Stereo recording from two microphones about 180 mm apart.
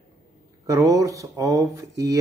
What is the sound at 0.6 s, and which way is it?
Speech, 20° right (ahead or behind).